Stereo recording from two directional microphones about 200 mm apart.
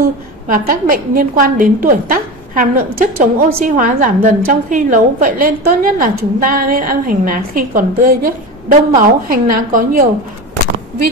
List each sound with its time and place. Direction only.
0.5 s a woman's voice: 45° right (ahead or behind)